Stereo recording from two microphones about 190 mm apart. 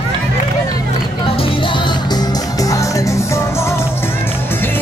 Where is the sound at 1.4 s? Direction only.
25° left (ahead or behind).